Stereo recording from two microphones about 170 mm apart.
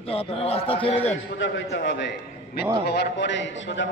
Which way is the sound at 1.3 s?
90° left.